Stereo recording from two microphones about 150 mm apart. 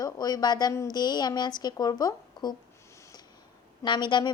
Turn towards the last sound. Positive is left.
turn(degrees=30)  # may be behind; listen again after turning